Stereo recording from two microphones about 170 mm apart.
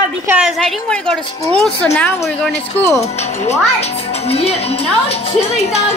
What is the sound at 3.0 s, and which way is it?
Speech, 40° left (ahead or behind).